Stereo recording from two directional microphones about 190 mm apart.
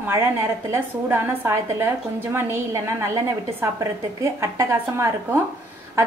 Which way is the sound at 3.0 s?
15° right (ahead or behind).